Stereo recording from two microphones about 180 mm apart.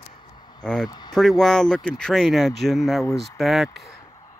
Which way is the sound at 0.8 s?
25° left (ahead or behind).